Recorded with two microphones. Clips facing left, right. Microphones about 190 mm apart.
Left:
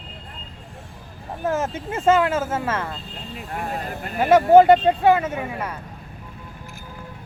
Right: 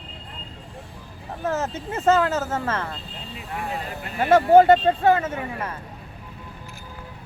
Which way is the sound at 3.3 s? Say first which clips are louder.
Left 1 dB; 50° left (ahead or behind).